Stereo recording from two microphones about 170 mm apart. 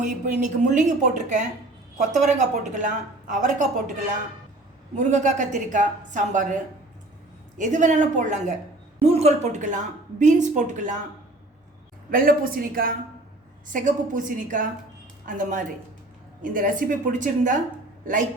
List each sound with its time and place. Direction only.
0.0 s a woman's voice: 45° right (ahead or behind)
4.9 s a woman's voice: 45° right (ahead or behind)
7.6 s a woman's voice: 45° right (ahead or behind)
12.1 s a woman's voice: 60° right (ahead or behind)